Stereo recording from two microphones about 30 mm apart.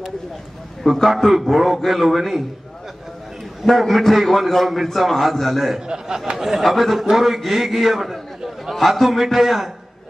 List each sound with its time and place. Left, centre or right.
0.8 s a man's voice: centre
3.8 s a man's voice: centre
5.9 s speech: right
6.3 s a man's voice: centre